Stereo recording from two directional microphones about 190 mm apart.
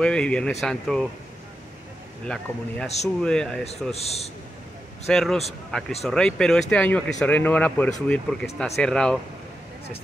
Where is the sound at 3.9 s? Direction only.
35° left (ahead or behind).